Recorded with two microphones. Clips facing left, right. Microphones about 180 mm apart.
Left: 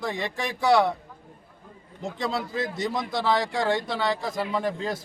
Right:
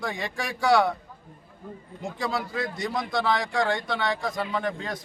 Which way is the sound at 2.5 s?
25° left (ahead or behind).